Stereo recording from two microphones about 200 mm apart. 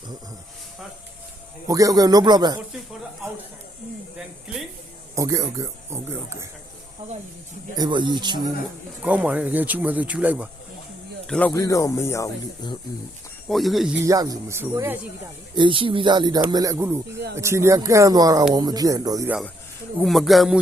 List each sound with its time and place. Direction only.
1.6 s a man's voice: 15° right (ahead or behind)
5.1 s speech: 15° right (ahead or behind)
7.8 s a man's voice: 25° right (ahead or behind)
9.0 s speech: 5° right (ahead or behind)
11.3 s speech: 5° left (ahead or behind)
13.5 s speech: centre (ahead or behind)
14.0 s speech: 20° right (ahead or behind)
15.5 s a man's voice: 25° right (ahead or behind)
20.0 s speech: centre (ahead or behind)